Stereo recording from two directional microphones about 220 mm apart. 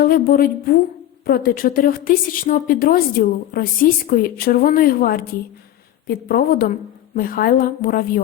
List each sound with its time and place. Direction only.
0.0 s a woman's voice: 40° left (ahead or behind)